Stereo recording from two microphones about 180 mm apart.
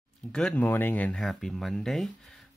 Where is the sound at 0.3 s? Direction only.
5° left (ahead or behind).